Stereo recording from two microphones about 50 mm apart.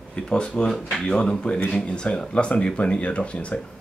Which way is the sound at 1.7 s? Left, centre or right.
Centre.